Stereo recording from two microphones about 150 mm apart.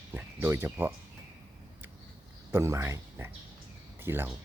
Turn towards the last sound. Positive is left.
turn(degrees=-15)  # may be behind; listen again after turning